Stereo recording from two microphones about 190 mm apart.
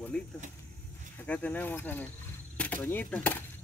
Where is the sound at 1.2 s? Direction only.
5° left (ahead or behind).